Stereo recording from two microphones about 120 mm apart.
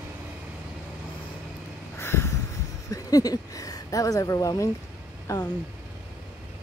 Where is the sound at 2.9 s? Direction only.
30° left (ahead or behind).